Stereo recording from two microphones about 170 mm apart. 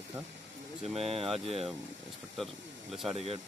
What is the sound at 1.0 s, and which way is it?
Speech, 35° right (ahead or behind).